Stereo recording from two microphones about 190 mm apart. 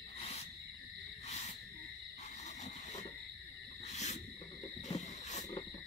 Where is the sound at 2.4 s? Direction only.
40° left (ahead or behind).